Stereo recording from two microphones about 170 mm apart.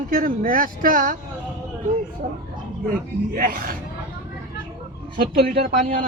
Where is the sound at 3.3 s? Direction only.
60° right (ahead or behind).